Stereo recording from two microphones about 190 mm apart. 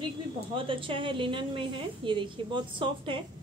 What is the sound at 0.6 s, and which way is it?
A woman's voice, 25° right (ahead or behind).